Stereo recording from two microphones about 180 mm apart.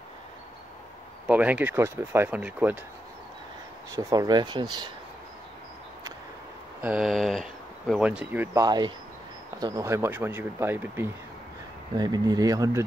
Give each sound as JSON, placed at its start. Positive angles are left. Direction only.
{"t": 1.2, "sound": "speech", "side_deg": -10}
{"t": 3.9, "sound": "speech", "side_deg": -15}
{"t": 6.8, "sound": "speech", "side_deg": -5}
{"t": 8.6, "sound": "speech", "side_deg": -20}
{"t": 11.9, "sound": "speech", "side_deg": -20}